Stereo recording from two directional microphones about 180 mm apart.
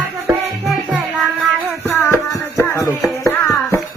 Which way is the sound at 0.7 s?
Centre (ahead or behind).